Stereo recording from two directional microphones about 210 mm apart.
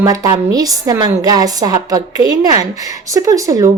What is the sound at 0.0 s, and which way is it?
A woman's voice, 15° right (ahead or behind).